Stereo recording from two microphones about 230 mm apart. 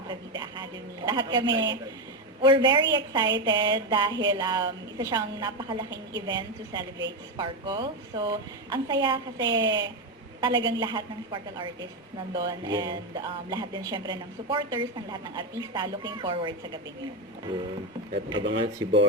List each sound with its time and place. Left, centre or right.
0.1 s speech: centre
18.3 s speech: right